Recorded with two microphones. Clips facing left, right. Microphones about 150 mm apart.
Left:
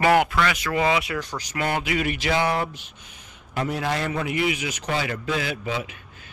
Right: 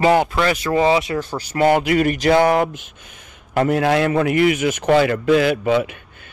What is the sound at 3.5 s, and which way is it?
A man's voice, 65° right (ahead or behind).